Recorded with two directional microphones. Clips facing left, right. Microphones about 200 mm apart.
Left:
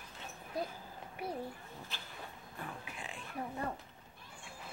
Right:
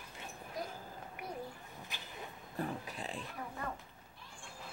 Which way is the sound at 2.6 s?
35° right (ahead or behind).